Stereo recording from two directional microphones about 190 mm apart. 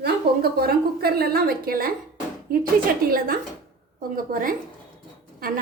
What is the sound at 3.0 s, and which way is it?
Speech, 50° right (ahead or behind).